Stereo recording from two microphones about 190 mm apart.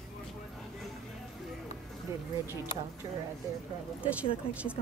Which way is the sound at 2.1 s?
15° right (ahead or behind).